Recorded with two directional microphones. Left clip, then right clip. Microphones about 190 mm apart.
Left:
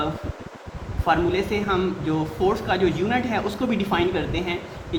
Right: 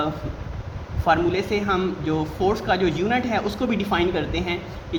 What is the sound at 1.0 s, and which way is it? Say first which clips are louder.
Speech: right 1 dB; 40° right (ahead or behind).